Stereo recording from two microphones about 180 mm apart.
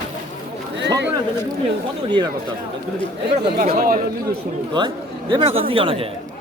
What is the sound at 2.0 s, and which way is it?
Speech, 25° right (ahead or behind).